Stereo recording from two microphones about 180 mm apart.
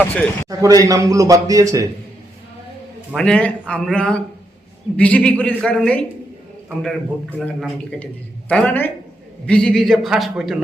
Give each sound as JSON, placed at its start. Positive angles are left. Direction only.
{"t": 0.0, "sound": "a man's voice", "side_deg": 10}
{"t": 0.4, "sound": "a man's voice", "side_deg": -20}
{"t": 3.2, "sound": "a man's voice", "side_deg": 5}